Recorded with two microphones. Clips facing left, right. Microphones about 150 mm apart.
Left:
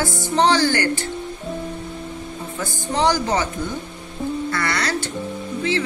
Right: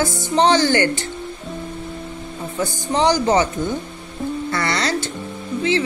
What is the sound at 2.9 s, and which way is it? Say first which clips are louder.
Music: right 2 dB; 20° right (ahead or behind).